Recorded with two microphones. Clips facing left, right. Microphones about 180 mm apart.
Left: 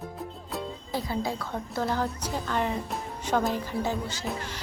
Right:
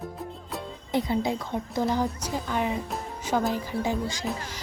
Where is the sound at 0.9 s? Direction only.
20° right (ahead or behind).